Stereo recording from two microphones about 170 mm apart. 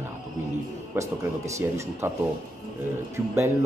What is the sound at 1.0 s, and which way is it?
Speech, 10° right (ahead or behind).